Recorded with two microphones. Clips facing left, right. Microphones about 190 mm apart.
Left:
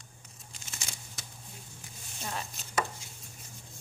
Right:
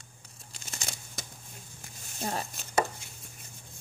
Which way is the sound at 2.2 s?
40° right (ahead or behind).